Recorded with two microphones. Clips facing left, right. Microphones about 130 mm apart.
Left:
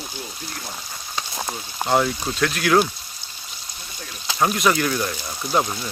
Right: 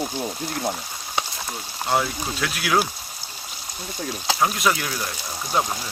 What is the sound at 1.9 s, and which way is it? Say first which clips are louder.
Speech: left 3 dB; 5° right (ahead or behind).